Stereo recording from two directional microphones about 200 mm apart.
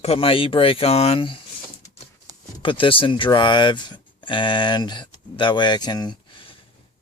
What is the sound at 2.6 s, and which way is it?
Speech, 25° left (ahead or behind).